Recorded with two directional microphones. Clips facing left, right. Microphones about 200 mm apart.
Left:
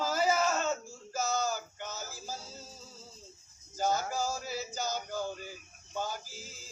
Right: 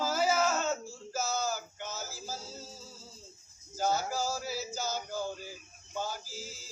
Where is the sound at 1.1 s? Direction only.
5° right (ahead or behind).